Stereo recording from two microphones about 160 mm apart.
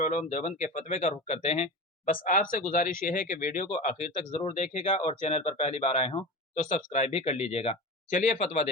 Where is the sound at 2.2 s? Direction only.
60° left (ahead or behind).